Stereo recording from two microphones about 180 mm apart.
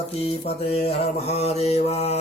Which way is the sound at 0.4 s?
35° left (ahead or behind).